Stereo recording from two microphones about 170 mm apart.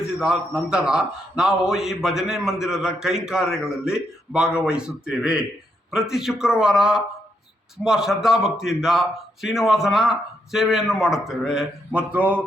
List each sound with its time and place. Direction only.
0.2 s a man's voice: 5° right (ahead or behind)